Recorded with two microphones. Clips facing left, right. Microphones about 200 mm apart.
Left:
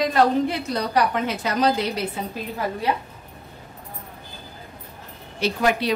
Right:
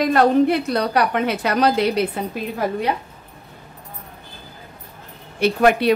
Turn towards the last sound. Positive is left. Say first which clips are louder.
# right 6 dB
turn(degrees=-60)  # may be behind; listen again after turning